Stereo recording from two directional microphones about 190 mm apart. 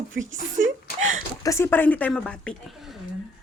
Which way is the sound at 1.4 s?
15° left (ahead or behind).